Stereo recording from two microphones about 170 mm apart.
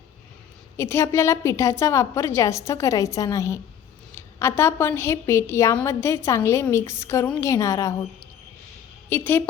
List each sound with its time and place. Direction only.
0.8 s a woman's voice: 15° left (ahead or behind)
9.0 s a woman's voice: 15° left (ahead or behind)